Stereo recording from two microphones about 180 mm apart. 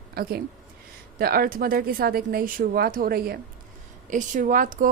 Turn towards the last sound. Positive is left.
turn(degrees=-50)  # may be behind; listen again after turning